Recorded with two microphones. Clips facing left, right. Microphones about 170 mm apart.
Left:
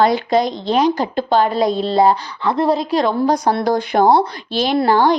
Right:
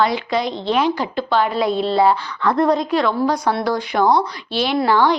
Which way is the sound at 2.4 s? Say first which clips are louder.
Right 1 dB; 25° left (ahead or behind).